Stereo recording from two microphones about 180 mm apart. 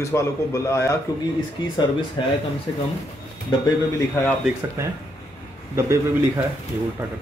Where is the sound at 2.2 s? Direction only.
25° left (ahead or behind).